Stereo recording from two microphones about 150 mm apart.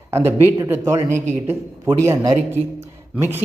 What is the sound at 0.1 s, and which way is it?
Speech, 15° right (ahead or behind).